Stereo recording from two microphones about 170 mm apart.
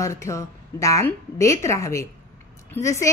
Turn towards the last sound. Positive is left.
turn(degrees=15)  # may be behind; listen again after turning